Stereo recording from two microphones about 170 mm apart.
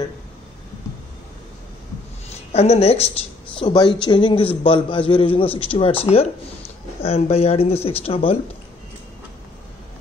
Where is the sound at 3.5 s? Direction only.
25° left (ahead or behind).